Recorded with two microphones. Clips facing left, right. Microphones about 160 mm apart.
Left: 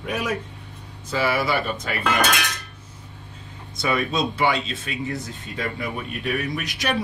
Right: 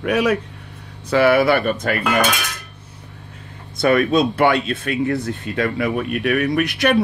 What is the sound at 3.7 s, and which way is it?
Speech, 55° right (ahead or behind).